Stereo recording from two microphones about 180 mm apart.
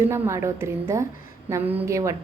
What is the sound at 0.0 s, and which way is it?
A woman's voice, 15° right (ahead or behind).